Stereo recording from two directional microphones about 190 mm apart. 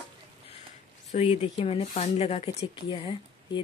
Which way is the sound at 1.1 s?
30° left (ahead or behind).